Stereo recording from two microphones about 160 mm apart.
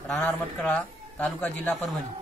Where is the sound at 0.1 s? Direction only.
5° left (ahead or behind).